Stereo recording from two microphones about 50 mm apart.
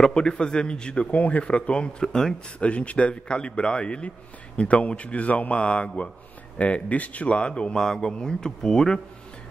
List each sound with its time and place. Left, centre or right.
0.1 s a man's voice: centre
1.1 s speech: left
1.4 s a man's voice: left
2.6 s a man's voice: left